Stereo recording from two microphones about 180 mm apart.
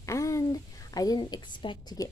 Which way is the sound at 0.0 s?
15° left (ahead or behind).